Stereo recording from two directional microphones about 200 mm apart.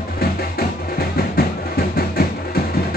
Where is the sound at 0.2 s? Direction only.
50° left (ahead or behind).